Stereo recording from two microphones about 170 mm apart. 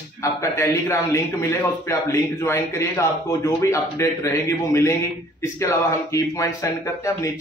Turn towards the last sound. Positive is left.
turn(degrees=20)  # may be behind; listen again after turning